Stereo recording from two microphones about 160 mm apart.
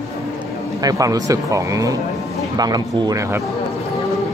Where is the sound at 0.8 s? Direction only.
20° right (ahead or behind).